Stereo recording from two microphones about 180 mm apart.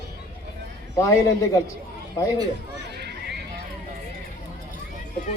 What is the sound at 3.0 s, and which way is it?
Run, 65° right (ahead or behind).